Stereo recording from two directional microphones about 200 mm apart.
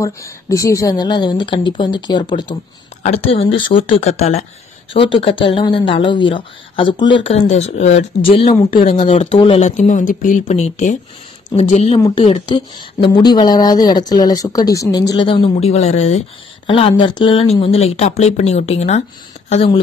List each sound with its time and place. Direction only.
0.0 s speech: 15° left (ahead or behind)